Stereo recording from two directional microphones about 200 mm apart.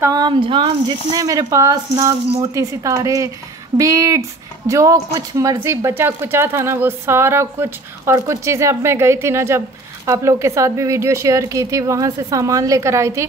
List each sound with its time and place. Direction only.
0.0 s speech: 20° right (ahead or behind)